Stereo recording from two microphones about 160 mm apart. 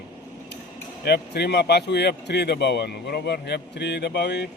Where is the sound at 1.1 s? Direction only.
90° left.